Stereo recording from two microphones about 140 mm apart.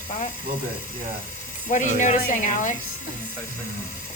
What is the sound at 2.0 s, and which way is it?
Speech, 60° left (ahead or behind).